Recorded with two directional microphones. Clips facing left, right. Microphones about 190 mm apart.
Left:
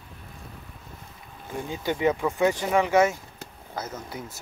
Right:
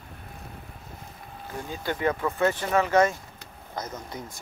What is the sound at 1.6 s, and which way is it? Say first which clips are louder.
Speech: left 3 dB; 15° left (ahead or behind).